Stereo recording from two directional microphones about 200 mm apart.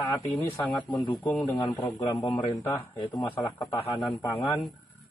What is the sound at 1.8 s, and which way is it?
A man's voice, 30° left (ahead or behind).